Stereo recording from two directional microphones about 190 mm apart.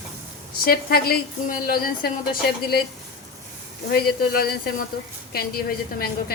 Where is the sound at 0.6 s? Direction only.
50° left (ahead or behind).